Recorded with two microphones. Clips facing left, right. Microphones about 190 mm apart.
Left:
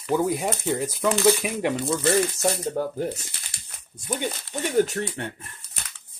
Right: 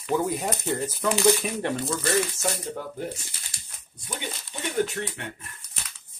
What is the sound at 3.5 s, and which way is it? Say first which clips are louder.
Dog: left 1 dB; 65° left (ahead or behind).